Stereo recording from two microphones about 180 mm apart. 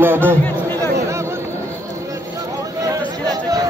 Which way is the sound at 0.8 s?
15° right (ahead or behind).